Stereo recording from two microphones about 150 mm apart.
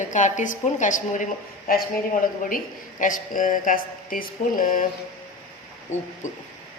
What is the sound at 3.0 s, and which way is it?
A woman's voice, 60° left (ahead or behind).